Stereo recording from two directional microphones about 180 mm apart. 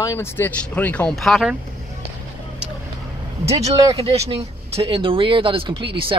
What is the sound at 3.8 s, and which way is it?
Speech, 30° right (ahead or behind).